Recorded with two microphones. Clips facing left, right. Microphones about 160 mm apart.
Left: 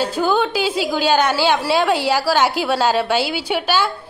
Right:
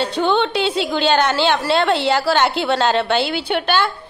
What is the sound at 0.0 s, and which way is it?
A woman's voice, 5° left (ahead or behind).